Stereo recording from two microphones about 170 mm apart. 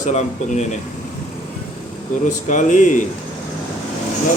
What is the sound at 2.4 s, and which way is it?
Speech, 45° left (ahead or behind).